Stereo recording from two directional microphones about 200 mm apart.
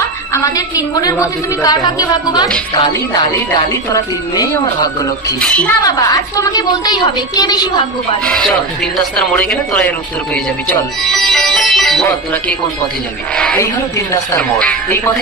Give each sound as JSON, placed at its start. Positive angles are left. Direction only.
{"t": 1.6, "sound": "a woman's voice", "side_deg": 20}
{"t": 5.4, "sound": "speech", "side_deg": 5}
{"t": 5.8, "sound": "a woman's voice", "side_deg": 15}
{"t": 8.2, "sound": "speech", "side_deg": 5}
{"t": 10.3, "sound": "music", "side_deg": 5}
{"t": 13.3, "sound": "speech", "side_deg": 5}
{"t": 13.6, "sound": "speech", "side_deg": 15}